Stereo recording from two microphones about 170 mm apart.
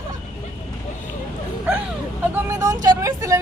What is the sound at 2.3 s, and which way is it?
Vehicle, 20° right (ahead or behind).